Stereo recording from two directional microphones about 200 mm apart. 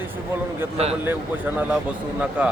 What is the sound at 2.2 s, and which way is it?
Speech, 5° right (ahead or behind).